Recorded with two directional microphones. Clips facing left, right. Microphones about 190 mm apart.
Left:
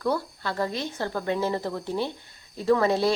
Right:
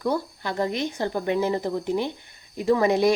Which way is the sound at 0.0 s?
15° right (ahead or behind).